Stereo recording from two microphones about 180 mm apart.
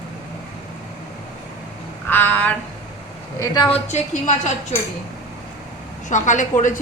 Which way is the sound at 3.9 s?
40° left (ahead or behind).